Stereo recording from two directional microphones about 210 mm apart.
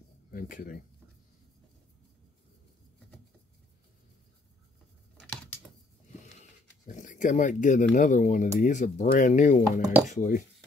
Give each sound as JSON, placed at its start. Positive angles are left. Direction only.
{"t": 0.3, "sound": "speech", "side_deg": 40}
{"t": 6.9, "sound": "speech", "side_deg": 35}